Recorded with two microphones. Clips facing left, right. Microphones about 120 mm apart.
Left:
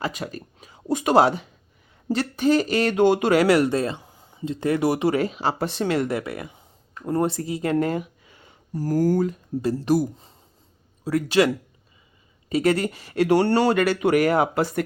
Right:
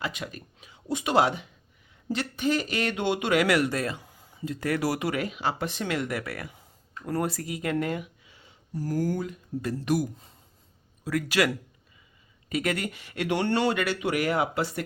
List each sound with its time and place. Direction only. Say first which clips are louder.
0.0 s speech: left 5 dB; 40° left (ahead or behind)
8.3 s a sound: left 5 dB; 50° left (ahead or behind)
9.6 s speech: left 6 dB; 30° left (ahead or behind)